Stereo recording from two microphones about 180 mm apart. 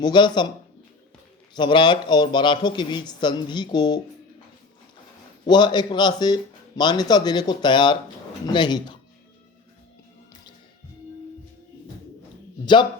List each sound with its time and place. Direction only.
0.0 s speech: 25° left (ahead or behind)
1.5 s speech: 25° left (ahead or behind)
5.5 s speech: 25° left (ahead or behind)